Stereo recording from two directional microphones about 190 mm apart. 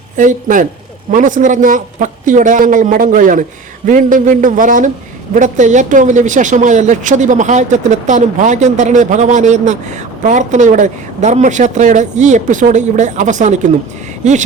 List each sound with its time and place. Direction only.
0.2 s a man's voice: 45° right (ahead or behind)